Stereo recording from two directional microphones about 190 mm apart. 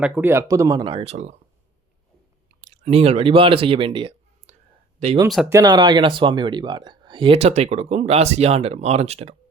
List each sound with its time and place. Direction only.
0.0 s speech: 10° right (ahead or behind); by 1.4 s 35° right (ahead or behind)
2.6 s speech: 35° right (ahead or behind)